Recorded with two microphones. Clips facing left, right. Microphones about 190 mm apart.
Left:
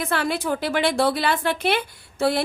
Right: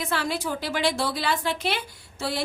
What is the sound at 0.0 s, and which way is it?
A woman's voice, 55° left (ahead or behind).